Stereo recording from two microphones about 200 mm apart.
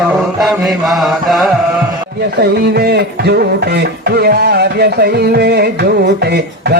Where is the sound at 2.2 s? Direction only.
55° right (ahead or behind).